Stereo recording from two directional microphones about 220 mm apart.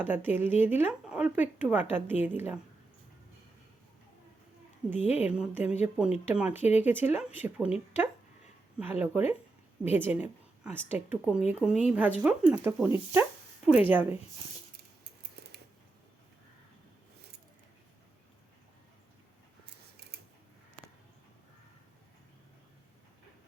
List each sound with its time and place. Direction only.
0.0 s speech: 10° right (ahead or behind)
5.1 s a woman's voice: 5° right (ahead or behind)
20.1 s scissors: 45° right (ahead or behind)